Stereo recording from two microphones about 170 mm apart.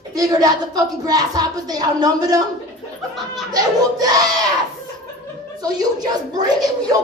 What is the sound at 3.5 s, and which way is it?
Speech, 20° right (ahead or behind).